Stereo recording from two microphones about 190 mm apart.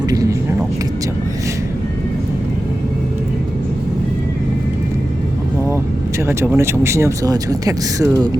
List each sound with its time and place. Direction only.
0.1 s vehicle: 20° right (ahead or behind)
6.2 s speech: 10° right (ahead or behind)